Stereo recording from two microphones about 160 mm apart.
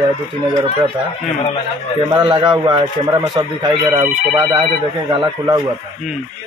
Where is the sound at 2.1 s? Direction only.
30° right (ahead or behind).